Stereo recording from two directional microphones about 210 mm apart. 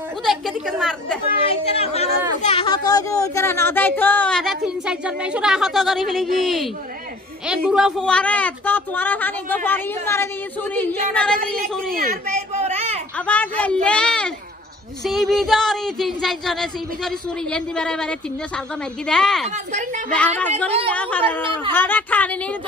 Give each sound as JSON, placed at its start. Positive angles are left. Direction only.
{"t": 0.2, "sound": "speech", "side_deg": 0}
{"t": 1.5, "sound": "a man's voice", "side_deg": 30}
{"t": 11.9, "sound": "a man's voice", "side_deg": -45}
{"t": 12.6, "sound": "a sound", "side_deg": -30}
{"t": 13.3, "sound": "a man's voice", "side_deg": 5}